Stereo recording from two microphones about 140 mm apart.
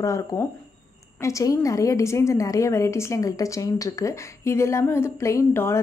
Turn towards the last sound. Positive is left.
turn(degrees=20)  # may be behind; listen again after turning